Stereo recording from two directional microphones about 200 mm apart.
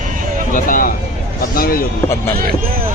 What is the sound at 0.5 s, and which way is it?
Speech, 45° left (ahead or behind).